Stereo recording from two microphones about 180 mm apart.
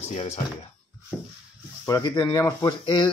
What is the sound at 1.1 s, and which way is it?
Speech, 5° right (ahead or behind).